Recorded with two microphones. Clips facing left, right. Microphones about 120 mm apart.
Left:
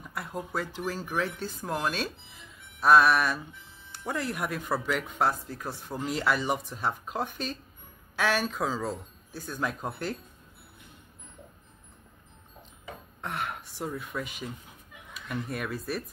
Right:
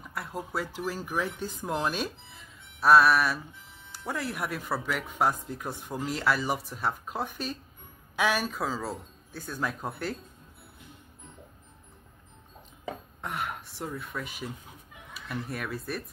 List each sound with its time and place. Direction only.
0.1 s speech: centre (ahead or behind)
2.8 s speech: centre (ahead or behind)
5.4 s speech: 15° right (ahead or behind)
6.0 s speech: centre (ahead or behind)
13.2 s a sound: 5° right (ahead or behind)
15.2 s speech: centre (ahead or behind)